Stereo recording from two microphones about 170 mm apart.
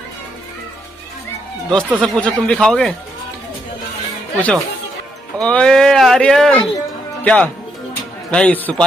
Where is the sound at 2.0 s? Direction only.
5° left (ahead or behind).